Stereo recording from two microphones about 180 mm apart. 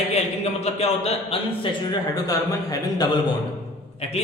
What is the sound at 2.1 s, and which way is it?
A man's voice, 20° left (ahead or behind).